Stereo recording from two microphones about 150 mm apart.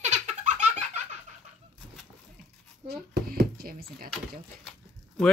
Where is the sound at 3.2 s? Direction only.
85° right.